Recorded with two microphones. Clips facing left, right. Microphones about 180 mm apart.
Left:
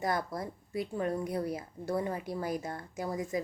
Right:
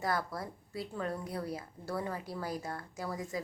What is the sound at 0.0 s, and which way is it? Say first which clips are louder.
A woman's voice: left 2 dB; 20° left (ahead or behind).